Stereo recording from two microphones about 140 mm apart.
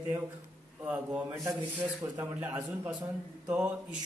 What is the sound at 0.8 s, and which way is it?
Speech, 20° right (ahead or behind).